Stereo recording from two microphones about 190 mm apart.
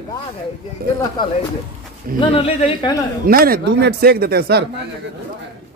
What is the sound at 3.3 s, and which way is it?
Speech, 50° right (ahead or behind).